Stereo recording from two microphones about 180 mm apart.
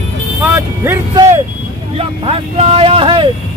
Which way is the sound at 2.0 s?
35° right (ahead or behind).